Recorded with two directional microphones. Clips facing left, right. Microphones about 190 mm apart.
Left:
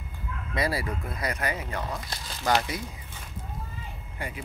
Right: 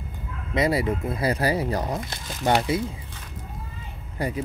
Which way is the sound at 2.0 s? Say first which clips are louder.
Even; 25° right (ahead or behind).